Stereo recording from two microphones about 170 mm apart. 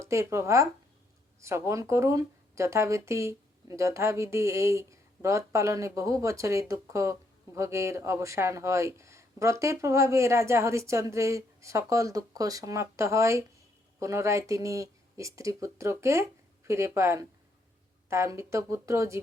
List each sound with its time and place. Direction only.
0.0 s speech: 15° right (ahead or behind)